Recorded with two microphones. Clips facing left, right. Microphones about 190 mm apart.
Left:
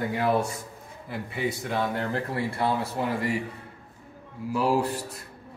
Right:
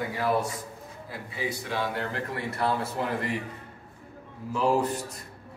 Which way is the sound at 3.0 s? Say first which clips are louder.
Left 2 dB; 5° left (ahead or behind).